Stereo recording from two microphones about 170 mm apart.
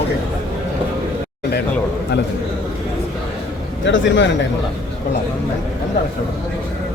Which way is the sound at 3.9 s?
90° left.